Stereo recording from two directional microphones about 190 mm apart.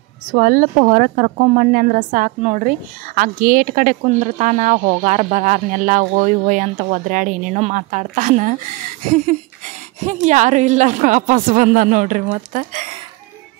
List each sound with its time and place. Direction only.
0.3 s a woman's voice: 50° right (ahead or behind)